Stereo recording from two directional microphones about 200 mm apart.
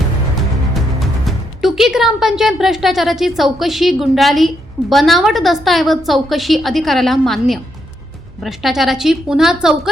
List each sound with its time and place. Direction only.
1.6 s speech: centre (ahead or behind)